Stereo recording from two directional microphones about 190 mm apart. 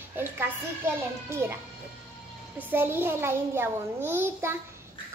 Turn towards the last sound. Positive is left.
turn(degrees=-10)  # may be behind; listen again after turning